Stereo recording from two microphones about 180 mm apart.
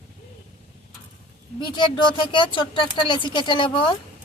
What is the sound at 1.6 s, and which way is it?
Speech, 25° left (ahead or behind).